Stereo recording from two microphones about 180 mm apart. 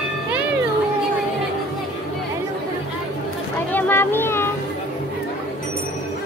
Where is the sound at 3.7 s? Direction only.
10° left (ahead or behind).